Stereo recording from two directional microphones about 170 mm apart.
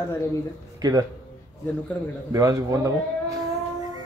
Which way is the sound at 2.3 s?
20° right (ahead or behind).